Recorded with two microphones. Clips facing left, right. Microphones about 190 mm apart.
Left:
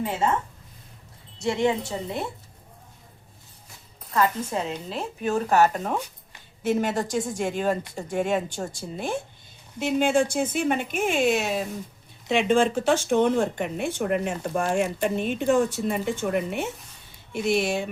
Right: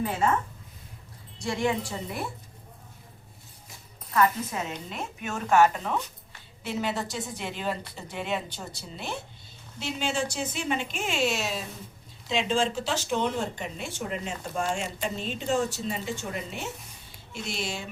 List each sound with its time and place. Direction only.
1.4 s a woman's voice: 25° left (ahead or behind)
4.4 s a woman's voice: 10° left (ahead or behind)
4.9 s a woman's voice: 35° left (ahead or behind); by 17.8 s 55° left (ahead or behind)